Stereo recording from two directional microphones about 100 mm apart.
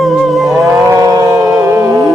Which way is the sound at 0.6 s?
35° right (ahead or behind).